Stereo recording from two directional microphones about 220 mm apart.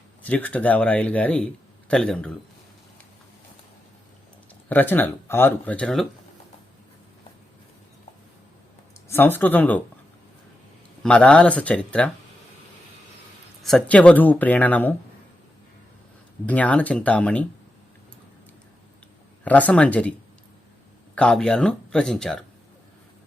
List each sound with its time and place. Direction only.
0.2 s speech: 5° left (ahead or behind)
4.7 s speech: 10° left (ahead or behind)
9.0 s speech: 10° left (ahead or behind)
11.0 s speech: 5° left (ahead or behind)
13.6 s speech: centre (ahead or behind)
16.5 s speech: 5° left (ahead or behind)
19.5 s speech: 5° left (ahead or behind)
21.2 s speech: 5° left (ahead or behind)